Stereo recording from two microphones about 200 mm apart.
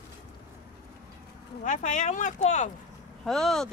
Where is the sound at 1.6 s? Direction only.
40° left (ahead or behind).